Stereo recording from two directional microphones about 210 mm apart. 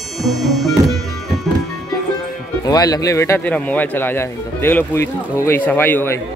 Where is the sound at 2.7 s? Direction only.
15° left (ahead or behind).